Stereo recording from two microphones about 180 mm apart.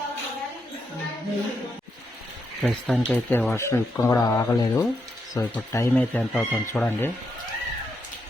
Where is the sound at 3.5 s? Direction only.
15° left (ahead or behind).